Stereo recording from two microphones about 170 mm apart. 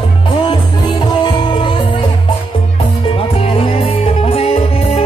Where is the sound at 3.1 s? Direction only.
35° left (ahead or behind).